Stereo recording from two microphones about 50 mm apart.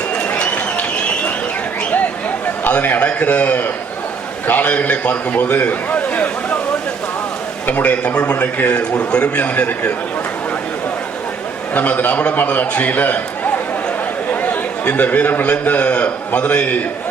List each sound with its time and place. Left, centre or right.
0.3 s applause: left
2.6 s a man's voice: left
7.7 s a man's voice: left
9.4 s a man's voice: left
11.7 s a man's voice: left
14.4 s a man's voice: left